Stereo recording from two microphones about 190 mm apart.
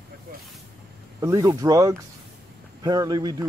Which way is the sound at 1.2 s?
15° right (ahead or behind).